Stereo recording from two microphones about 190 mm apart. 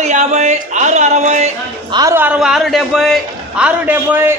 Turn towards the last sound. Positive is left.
turn(degrees=-10)  # may be behind; listen again after turning